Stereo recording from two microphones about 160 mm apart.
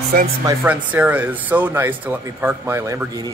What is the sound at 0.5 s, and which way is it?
Speech, 10° right (ahead or behind).